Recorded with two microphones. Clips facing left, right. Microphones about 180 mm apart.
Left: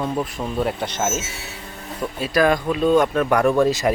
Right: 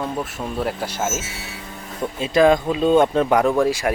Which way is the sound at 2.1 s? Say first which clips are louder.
Right 3 dB; 25° right (ahead or behind).